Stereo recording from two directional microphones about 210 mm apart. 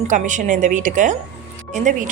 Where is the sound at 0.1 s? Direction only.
35° right (ahead or behind).